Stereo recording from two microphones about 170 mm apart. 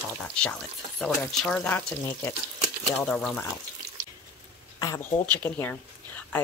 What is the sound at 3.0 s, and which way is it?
Speech, 5° left (ahead or behind).